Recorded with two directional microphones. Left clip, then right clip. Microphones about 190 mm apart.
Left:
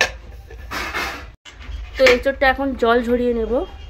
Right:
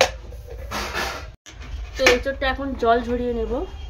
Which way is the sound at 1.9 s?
35° left (ahead or behind).